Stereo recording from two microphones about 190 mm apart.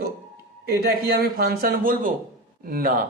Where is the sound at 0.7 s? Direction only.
55° right (ahead or behind).